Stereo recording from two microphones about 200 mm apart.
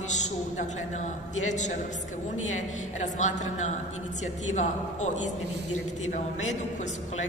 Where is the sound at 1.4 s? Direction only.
35° left (ahead or behind).